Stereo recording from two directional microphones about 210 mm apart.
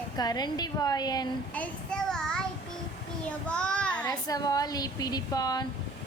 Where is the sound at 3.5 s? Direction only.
5° left (ahead or behind).